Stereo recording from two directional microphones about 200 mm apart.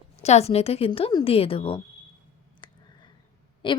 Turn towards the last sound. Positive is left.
turn(degrees=25)  # may be behind; listen again after turning